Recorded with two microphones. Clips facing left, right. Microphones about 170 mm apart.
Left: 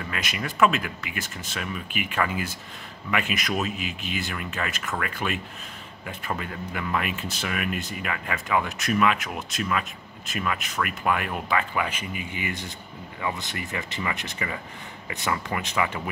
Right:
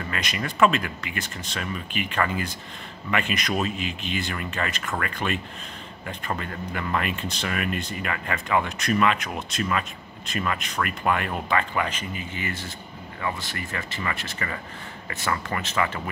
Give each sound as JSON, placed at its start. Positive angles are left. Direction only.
{"t": 0.1, "sound": "speech", "side_deg": 5}